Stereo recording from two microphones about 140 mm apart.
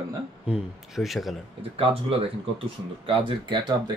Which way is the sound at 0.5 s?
Centre (ahead or behind).